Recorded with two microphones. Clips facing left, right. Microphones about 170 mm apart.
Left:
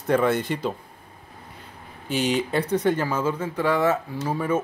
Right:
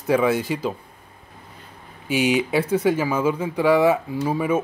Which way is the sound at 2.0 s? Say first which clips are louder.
Right 3 dB; 10° right (ahead or behind).